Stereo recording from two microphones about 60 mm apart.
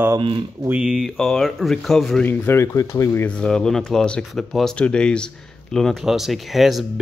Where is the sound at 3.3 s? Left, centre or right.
Centre.